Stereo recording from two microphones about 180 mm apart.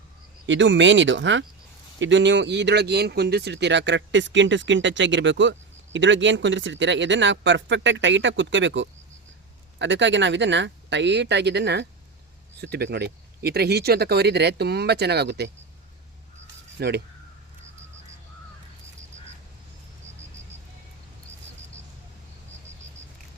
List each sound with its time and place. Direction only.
0.4 s speech: 90° right; by 15.4 s 65° right (ahead or behind)
16.8 s speech: 60° right (ahead or behind)